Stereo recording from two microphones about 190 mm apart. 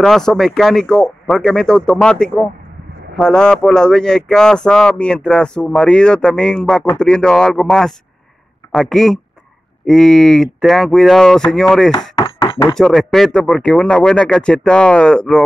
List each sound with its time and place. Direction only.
0.0 s speech: 5° left (ahead or behind)
12.2 s a sound: 20° left (ahead or behind)
12.7 s speech: centre (ahead or behind)